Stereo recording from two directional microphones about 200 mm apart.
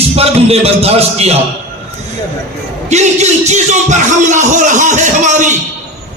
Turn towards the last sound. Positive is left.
turn(degrees=-35)  # may be behind; listen again after turning